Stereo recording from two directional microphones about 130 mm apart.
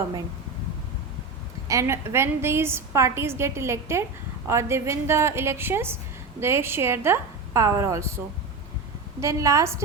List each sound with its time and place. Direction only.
1.6 s a woman's voice: 25° right (ahead or behind)
9.2 s a woman's voice: 25° right (ahead or behind)